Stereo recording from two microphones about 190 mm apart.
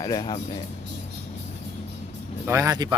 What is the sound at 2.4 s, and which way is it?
Speech, 15° right (ahead or behind).